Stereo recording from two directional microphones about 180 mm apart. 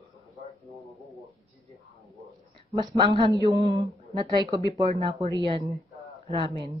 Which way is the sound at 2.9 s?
30° right (ahead or behind).